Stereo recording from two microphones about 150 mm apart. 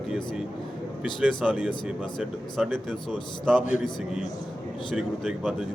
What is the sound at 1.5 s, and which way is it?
Speech, 10° right (ahead or behind).